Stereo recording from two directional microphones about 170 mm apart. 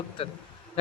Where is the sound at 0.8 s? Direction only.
35° left (ahead or behind).